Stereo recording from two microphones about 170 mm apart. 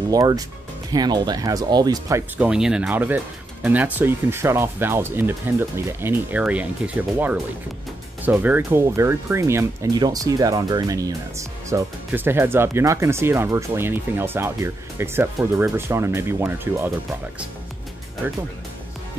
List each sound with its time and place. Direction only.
0.1 s speech: 20° right (ahead or behind)